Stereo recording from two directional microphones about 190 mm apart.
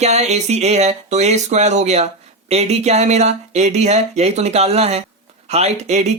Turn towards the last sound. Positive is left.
turn(degrees=-35)  # may be behind; listen again after turning